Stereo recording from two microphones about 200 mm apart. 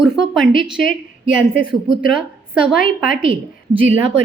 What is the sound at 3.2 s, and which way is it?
Speech, 30° right (ahead or behind).